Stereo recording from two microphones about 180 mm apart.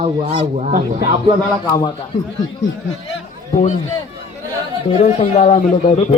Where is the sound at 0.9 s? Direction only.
20° right (ahead or behind).